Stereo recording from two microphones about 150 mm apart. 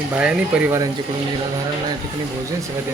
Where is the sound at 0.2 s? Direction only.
5° right (ahead or behind).